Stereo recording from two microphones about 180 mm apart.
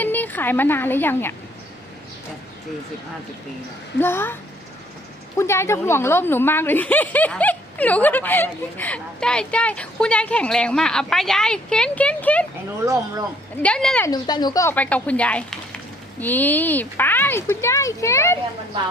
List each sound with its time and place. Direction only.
0.0 s speech: 10° left (ahead or behind)
4.0 s speech: 10° left (ahead or behind)
5.4 s speech: 15° left (ahead or behind)
12.8 s speech: 15° right (ahead or behind)
13.6 s speech: 5° left (ahead or behind)
14.1 s speech: 20° left (ahead or behind)